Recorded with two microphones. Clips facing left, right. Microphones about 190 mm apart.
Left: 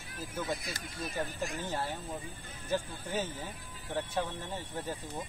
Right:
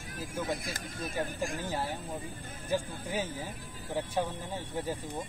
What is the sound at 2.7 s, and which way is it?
Speech, 10° right (ahead or behind).